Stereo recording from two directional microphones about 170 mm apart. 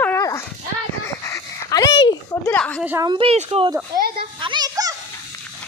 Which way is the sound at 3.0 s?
30° right (ahead or behind).